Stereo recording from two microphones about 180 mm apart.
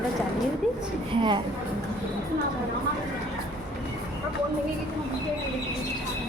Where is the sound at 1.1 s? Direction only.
25° right (ahead or behind).